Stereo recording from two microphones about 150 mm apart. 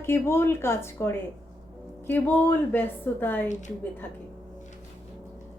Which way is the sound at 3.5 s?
55° left (ahead or behind).